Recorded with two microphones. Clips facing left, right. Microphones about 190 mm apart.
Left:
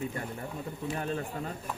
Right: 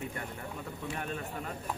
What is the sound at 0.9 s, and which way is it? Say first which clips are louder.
Speech: left 5 dB; 30° left (ahead or behind).